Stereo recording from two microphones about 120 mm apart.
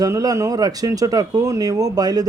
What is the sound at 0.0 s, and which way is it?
Speech, 30° right (ahead or behind).